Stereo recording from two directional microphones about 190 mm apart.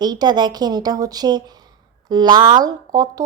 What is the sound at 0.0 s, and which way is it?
Speech, 20° right (ahead or behind).